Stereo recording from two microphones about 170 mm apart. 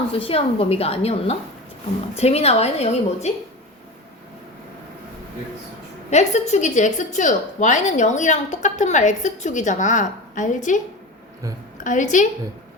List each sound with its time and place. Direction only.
0.1 s a woman's voice: 35° left (ahead or behind)
6.1 s a woman's voice: 40° left (ahead or behind)
11.8 s a woman's voice: 50° left (ahead or behind)